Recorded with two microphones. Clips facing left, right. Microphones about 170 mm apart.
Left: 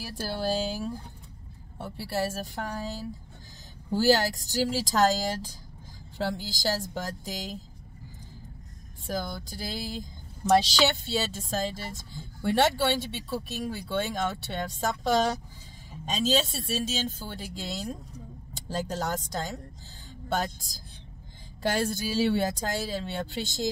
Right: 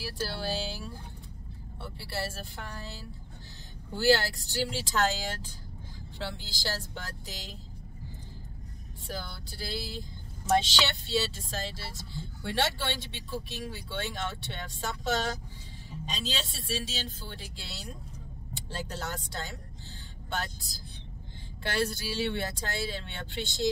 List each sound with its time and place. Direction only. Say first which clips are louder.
0.4 s speech: left 6 dB; 45° left (ahead or behind)
9.1 s speech: left 7 dB; 45° left (ahead or behind)
21.6 s speech: left 3 dB; 45° left (ahead or behind)